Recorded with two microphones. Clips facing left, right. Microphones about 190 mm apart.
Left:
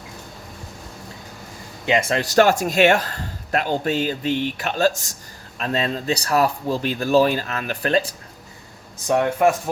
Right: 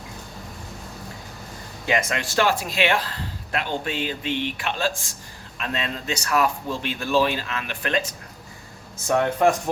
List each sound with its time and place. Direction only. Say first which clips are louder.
1.9 s speech: left 4 dB; 30° left (ahead or behind)